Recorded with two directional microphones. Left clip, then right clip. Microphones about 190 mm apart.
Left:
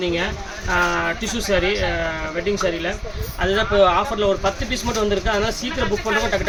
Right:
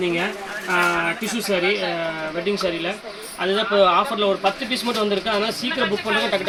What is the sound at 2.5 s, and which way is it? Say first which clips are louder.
Speech: left 2 dB; 5° left (ahead or behind).